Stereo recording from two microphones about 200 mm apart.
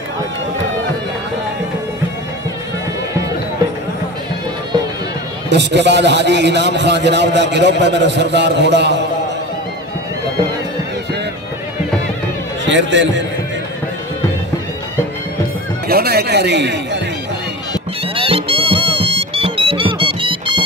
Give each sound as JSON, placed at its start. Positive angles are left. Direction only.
{"t": 5.5, "sound": "a man's voice", "side_deg": -60}
{"t": 12.6, "sound": "a man's voice", "side_deg": -65}
{"t": 15.9, "sound": "a man's voice", "side_deg": -50}
{"t": 18.0, "sound": "music", "side_deg": -25}